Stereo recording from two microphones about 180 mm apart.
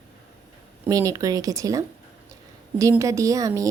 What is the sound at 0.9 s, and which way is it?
A woman's voice, 20° right (ahead or behind).